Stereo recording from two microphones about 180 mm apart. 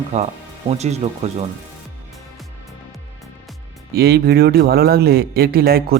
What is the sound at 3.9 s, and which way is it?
Speech, 60° right (ahead or behind).